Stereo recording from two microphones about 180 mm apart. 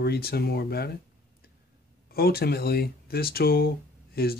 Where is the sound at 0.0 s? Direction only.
60° left (ahead or behind).